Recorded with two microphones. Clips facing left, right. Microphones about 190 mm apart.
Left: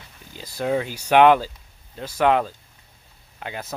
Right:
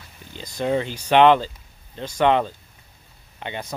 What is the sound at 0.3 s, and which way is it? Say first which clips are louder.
Speech: right 1 dB; 5° left (ahead or behind).